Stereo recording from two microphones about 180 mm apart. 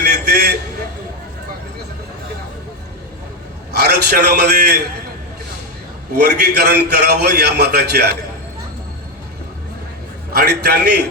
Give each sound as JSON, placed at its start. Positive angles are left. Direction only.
{"t": 0.0, "sound": "a sound", "side_deg": -65}
{"t": 3.7, "sound": "a man's voice", "side_deg": -65}
{"t": 6.1, "sound": "a man's voice", "side_deg": -65}
{"t": 10.3, "sound": "a man's voice", "side_deg": -65}